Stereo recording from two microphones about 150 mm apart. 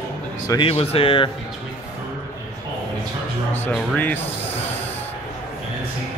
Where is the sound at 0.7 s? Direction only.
40° left (ahead or behind).